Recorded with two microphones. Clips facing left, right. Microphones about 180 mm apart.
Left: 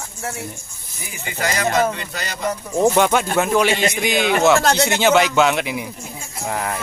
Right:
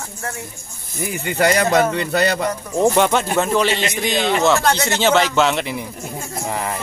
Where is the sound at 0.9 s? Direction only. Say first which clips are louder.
Right 9 dB; 60° right (ahead or behind).